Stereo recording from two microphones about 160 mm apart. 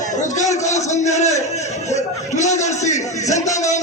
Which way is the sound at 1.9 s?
45° left (ahead or behind).